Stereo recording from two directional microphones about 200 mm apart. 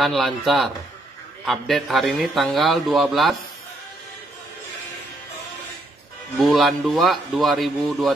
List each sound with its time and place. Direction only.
0.0 s a man's voice: centre (ahead or behind)
6.3 s a man's voice: centre (ahead or behind)